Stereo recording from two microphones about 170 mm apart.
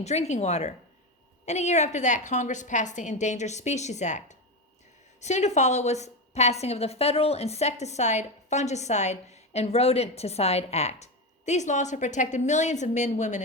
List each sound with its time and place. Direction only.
0.0 s a woman's voice: 40° left (ahead or behind)